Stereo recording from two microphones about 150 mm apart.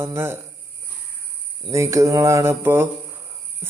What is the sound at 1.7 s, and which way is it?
Mantra, 20° right (ahead or behind).